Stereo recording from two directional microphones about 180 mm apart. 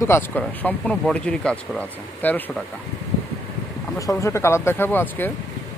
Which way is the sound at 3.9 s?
15° left (ahead or behind).